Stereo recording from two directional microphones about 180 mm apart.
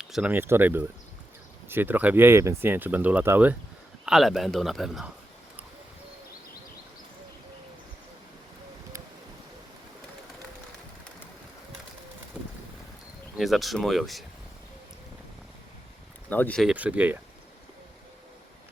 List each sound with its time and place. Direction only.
0.0 s a man's voice: 5° right (ahead or behind)
12.4 s bird: 5° right (ahead or behind)
13.3 s a man's voice: centre (ahead or behind)
16.3 s speech: 10° left (ahead or behind)
16.6 s speech: 10° right (ahead or behind)